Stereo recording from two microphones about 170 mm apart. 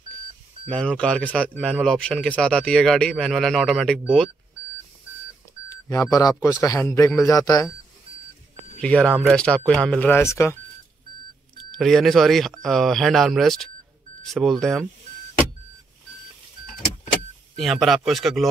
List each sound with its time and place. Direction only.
0.7 s a man's voice: 5° left (ahead or behind)
5.9 s a man's voice: 20° left (ahead or behind)
8.7 s a man's voice: 5° left (ahead or behind)
11.7 s a man's voice: centre (ahead or behind)
17.6 s a man's voice: centre (ahead or behind)